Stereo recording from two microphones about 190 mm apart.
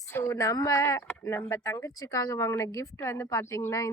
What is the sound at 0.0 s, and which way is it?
Speech, 15° left (ahead or behind).